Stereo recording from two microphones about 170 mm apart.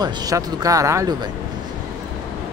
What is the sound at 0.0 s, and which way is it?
Speech, 25° right (ahead or behind).